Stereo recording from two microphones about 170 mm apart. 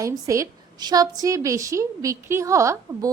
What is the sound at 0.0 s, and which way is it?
A woman's voice, 20° right (ahead or behind).